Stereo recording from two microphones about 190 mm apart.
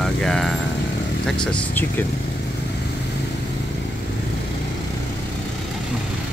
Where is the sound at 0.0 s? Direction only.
5° left (ahead or behind).